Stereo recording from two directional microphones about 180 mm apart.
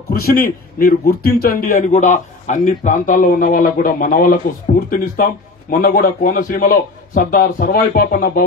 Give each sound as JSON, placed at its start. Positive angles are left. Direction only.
{"t": 0.1, "sound": "a man's voice", "side_deg": 55}